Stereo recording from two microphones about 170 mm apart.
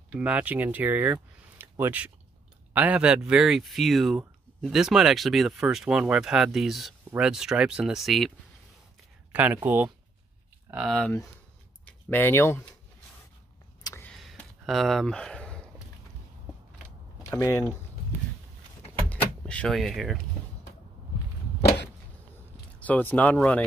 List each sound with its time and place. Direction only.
0.1 s speech: 10° right (ahead or behind)
9.3 s speech: 10° right (ahead or behind); by 12.6 s 15° left (ahead or behind)
14.0 s a sound: centre (ahead or behind)
17.2 s speech: 20° left (ahead or behind)
19.0 s vehicle: 10° left (ahead or behind)
22.8 s speech: 10° left (ahead or behind)